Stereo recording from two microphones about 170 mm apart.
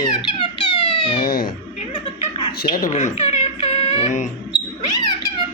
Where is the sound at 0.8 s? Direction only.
25° left (ahead or behind).